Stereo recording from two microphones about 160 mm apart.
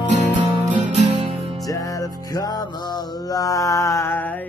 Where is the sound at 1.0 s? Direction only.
35° right (ahead or behind).